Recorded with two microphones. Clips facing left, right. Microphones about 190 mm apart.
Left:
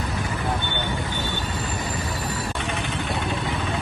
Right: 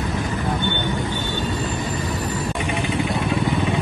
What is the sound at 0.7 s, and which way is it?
Vehicle, 15° right (ahead or behind).